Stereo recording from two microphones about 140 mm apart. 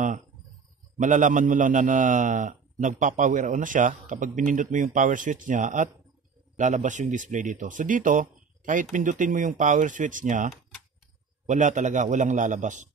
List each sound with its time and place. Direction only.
0.9 s a man's voice: 65° right (ahead or behind)